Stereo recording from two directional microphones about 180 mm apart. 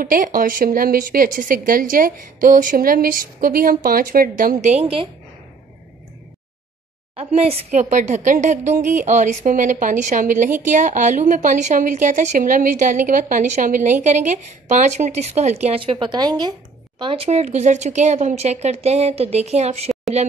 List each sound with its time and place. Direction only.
0.0 s speech: 50° right (ahead or behind)
7.2 s a woman's voice: 35° right (ahead or behind)